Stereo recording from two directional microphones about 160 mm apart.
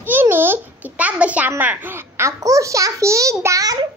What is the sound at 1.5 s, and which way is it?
A child's voice, 10° right (ahead or behind).